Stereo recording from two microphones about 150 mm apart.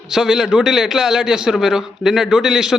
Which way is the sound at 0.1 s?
5° right (ahead or behind).